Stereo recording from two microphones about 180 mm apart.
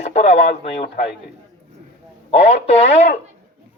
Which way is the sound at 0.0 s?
35° left (ahead or behind).